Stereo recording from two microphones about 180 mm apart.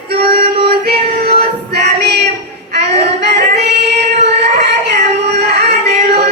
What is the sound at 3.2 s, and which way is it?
Child singing, 70° right (ahead or behind).